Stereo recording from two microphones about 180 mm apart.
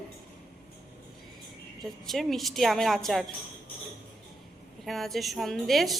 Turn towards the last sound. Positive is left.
turn(degrees=0)  # may be behind; listen again after turning